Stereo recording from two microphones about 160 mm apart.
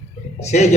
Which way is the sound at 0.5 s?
50° left (ahead or behind).